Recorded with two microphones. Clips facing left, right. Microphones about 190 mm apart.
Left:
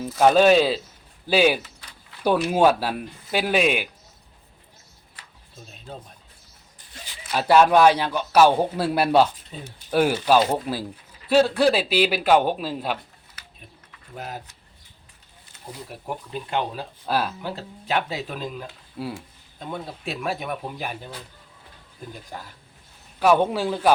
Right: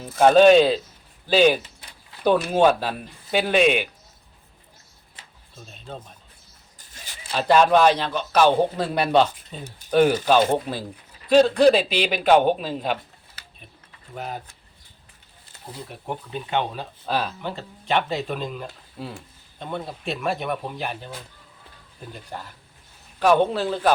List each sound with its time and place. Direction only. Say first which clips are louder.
0.3 s a man's voice: right 3 dB; 5° left (ahead or behind)
5.2 s a sound: right 1 dB; 25° right (ahead or behind)
7.3 s a man's voice: left 1 dB; 10° left (ahead or behind)
16.0 s speech: right 1 dB; 5° left (ahead or behind)
23.2 s a man's voice: even; 10° left (ahead or behind)